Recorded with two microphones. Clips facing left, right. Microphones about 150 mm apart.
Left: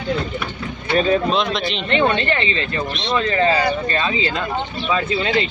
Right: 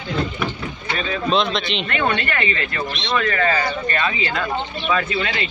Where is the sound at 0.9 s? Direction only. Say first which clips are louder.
Left 10 dB; 40° left (ahead or behind).